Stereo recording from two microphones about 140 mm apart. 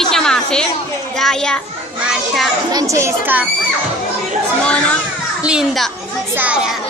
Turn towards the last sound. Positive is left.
turn(degrees=-5)  # may be behind; listen again after turning